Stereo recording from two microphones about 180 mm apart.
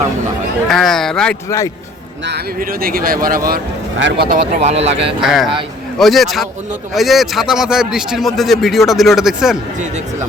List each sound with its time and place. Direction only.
0.7 s a man's voice: centre (ahead or behind)
1.5 s a man's voice: 15° left (ahead or behind)
2.2 s speech: 60° right (ahead or behind)
3.9 s speech: 90° right
4.3 s speech: 40° right (ahead or behind)
5.2 s a man's voice: centre (ahead or behind)